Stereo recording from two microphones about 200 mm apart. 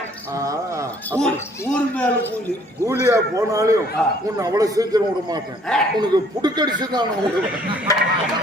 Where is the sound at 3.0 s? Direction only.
15° right (ahead or behind).